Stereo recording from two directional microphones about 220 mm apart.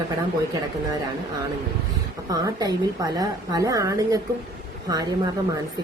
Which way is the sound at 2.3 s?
15° right (ahead or behind).